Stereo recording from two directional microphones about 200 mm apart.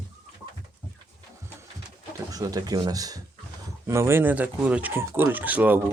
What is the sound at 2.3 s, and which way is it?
Speech, 20° right (ahead or behind).